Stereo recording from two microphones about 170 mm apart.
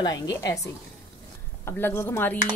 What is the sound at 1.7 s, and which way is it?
Speech, 15° left (ahead or behind).